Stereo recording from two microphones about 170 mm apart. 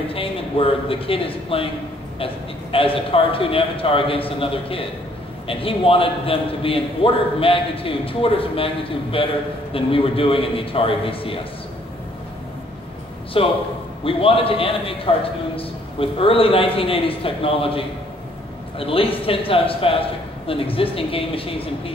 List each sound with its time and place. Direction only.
0.1 s a man's voice: 35° left (ahead or behind)
13.4 s a man's voice: 35° left (ahead or behind)